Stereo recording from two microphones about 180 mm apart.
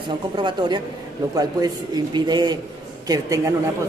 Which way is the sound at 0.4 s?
25° right (ahead or behind).